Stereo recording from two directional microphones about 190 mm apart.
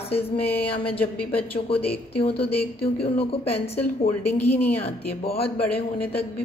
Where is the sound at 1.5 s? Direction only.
30° left (ahead or behind).